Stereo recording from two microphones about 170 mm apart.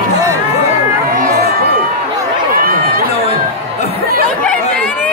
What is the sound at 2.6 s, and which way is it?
Run, 60° right (ahead or behind).